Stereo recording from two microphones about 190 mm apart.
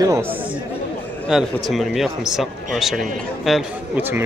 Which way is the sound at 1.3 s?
Centre (ahead or behind).